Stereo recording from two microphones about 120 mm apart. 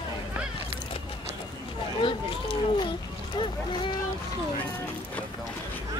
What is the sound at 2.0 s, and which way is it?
Speech, 45° left (ahead or behind).